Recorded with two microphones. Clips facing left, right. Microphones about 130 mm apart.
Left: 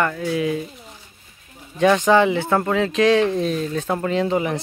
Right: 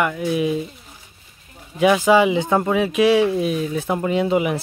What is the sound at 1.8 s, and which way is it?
Speech, 10° right (ahead or behind).